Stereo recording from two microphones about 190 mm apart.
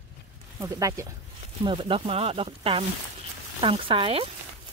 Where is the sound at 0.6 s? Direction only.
15° right (ahead or behind).